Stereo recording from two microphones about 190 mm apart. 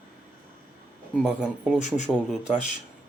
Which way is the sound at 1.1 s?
Centre (ahead or behind).